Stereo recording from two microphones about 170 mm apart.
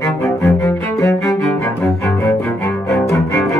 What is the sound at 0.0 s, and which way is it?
Cello, 15° left (ahead or behind).